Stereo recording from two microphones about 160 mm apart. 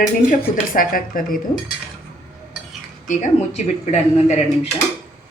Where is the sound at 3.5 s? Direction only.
45° left (ahead or behind).